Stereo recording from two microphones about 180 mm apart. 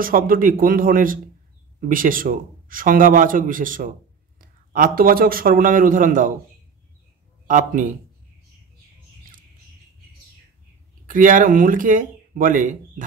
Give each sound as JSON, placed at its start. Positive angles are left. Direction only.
{"t": 0.0, "sound": "a man's voice", "side_deg": -50}
{"t": 7.4, "sound": "a man's voice", "side_deg": -45}
{"t": 11.1, "sound": "a man's voice", "side_deg": -45}